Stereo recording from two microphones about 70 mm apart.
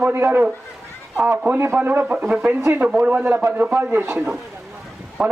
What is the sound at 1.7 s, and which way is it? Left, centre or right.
A man's voice, right.